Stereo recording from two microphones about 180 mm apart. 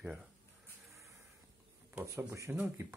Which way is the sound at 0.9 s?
15° right (ahead or behind).